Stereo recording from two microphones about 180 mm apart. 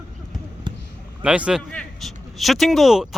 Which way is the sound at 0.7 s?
25° right (ahead or behind).